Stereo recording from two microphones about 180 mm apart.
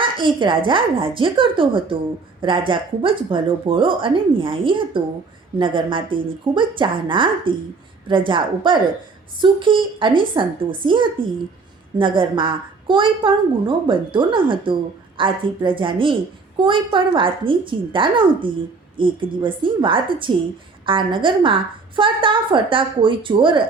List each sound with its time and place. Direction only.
0.0 s a woman's voice: 25° right (ahead or behind)